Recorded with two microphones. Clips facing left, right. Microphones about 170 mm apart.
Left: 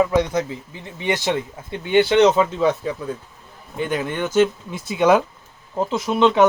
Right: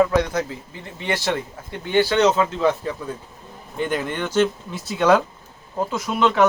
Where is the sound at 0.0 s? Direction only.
20° left (ahead or behind).